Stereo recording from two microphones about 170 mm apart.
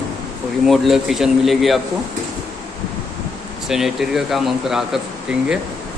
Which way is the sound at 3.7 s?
Centre (ahead or behind).